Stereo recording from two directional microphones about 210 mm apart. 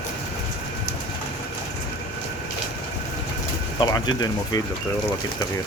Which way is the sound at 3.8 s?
20° left (ahead or behind).